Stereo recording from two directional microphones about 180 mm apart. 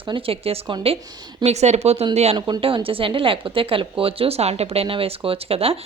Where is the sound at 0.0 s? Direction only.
30° right (ahead or behind).